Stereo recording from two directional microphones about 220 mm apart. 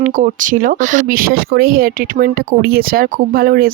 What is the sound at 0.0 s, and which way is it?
Speech, 35° right (ahead or behind).